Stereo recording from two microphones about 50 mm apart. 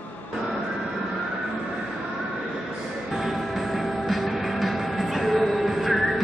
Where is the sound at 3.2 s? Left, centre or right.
Centre.